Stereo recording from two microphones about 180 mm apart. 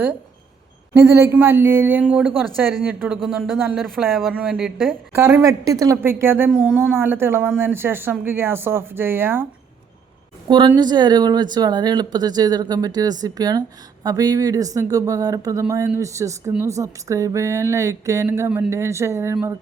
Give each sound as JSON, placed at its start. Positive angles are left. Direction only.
{"t": 0.9, "sound": "speech", "side_deg": -15}
{"t": 5.1, "sound": "speech", "side_deg": -15}
{"t": 10.5, "sound": "speech", "side_deg": -25}